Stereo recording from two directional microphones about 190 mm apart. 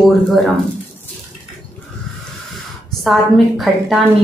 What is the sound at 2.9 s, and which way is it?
Speech, centre (ahead or behind).